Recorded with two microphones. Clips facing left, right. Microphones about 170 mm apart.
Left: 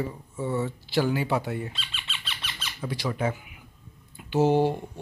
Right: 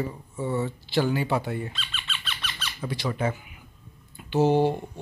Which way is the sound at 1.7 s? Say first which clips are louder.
Right 2 dB; 25° left (ahead or behind).